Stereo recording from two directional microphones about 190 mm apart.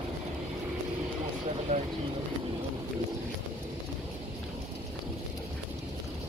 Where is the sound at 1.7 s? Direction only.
35° right (ahead or behind).